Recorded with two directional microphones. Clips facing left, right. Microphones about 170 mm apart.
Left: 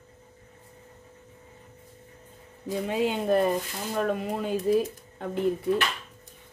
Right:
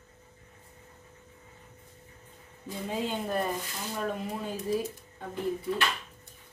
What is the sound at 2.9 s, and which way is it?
Speech, 75° left (ahead or behind).